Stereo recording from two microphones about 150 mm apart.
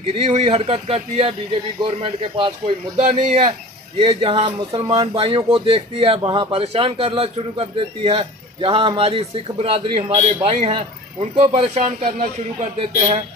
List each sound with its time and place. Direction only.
0.1 s speech: 40° right (ahead or behind)
12.2 s speech: 50° right (ahead or behind)